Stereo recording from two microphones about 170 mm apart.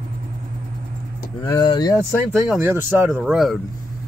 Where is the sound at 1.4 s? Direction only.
25° left (ahead or behind).